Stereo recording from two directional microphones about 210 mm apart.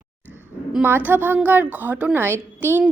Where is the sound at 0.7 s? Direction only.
10° right (ahead or behind).